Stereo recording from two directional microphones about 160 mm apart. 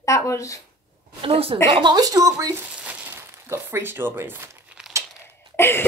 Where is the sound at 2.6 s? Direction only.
10° right (ahead or behind).